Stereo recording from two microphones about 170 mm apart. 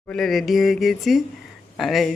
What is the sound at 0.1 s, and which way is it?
Speech, centre (ahead or behind).